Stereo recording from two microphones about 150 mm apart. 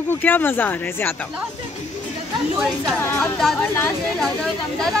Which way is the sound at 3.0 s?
15° left (ahead or behind).